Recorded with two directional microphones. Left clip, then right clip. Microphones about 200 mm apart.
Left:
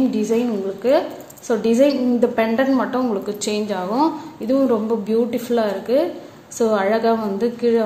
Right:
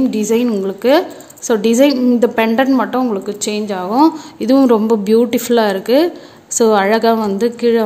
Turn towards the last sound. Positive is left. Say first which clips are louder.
# right 5 dB
turn(degrees=-35)  # may be behind; listen again after turning